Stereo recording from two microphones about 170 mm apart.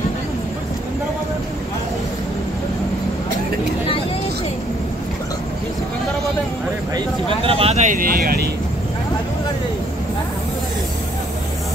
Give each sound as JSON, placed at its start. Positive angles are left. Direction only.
{"t": 7.2, "sound": "vehicle", "side_deg": -35}